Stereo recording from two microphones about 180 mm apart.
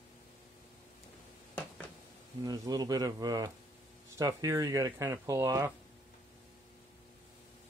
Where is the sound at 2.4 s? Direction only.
20° right (ahead or behind).